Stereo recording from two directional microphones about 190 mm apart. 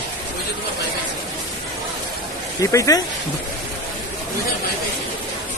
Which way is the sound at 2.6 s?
15° left (ahead or behind).